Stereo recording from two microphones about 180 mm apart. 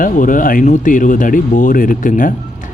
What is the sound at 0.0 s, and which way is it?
Speech, 50° left (ahead or behind).